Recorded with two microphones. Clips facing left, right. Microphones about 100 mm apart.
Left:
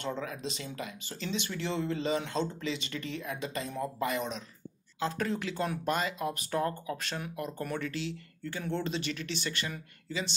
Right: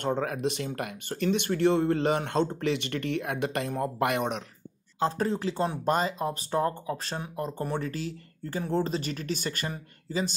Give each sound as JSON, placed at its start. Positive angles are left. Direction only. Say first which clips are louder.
{"t": 0.0, "sound": "speech", "louder": "right 8 dB", "side_deg": -55}
{"t": 5.0, "sound": "speech", "louder": "right 5 dB", "side_deg": -35}